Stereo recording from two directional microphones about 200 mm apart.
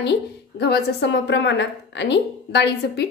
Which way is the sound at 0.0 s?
55° left (ahead or behind).